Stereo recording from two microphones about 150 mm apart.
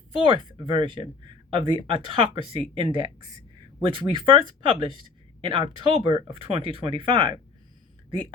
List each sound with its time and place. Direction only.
0.2 s speech: 35° right (ahead or behind)